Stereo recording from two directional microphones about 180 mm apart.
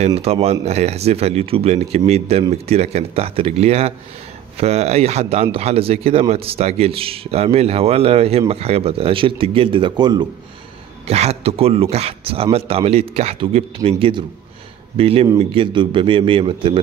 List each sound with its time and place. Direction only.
0.0 s a man's voice: 35° right (ahead or behind)
11.1 s a man's voice: 35° right (ahead or behind)